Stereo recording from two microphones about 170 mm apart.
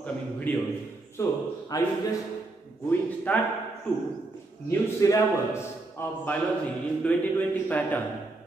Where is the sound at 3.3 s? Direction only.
10° left (ahead or behind).